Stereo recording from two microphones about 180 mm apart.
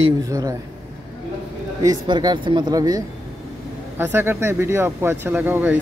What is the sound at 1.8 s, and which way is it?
Speech, 25° right (ahead or behind).